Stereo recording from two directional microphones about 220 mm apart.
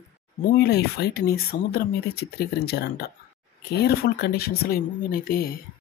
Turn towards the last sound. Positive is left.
turn(degrees=40)  # may be behind; listen again after turning